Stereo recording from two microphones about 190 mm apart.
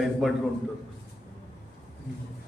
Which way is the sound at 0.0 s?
Centre (ahead or behind).